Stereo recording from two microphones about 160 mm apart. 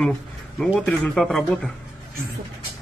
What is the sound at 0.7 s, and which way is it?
Speech, 5° left (ahead or behind).